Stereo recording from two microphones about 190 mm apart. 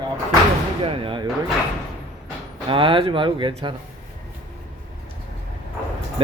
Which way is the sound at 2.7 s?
25° right (ahead or behind).